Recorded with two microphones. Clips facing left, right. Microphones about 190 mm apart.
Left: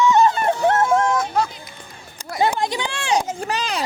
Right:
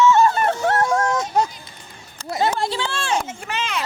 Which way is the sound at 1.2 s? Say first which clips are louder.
Even; 20° right (ahead or behind).